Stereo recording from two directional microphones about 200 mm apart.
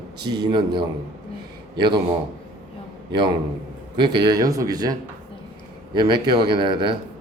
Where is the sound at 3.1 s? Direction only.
25° right (ahead or behind).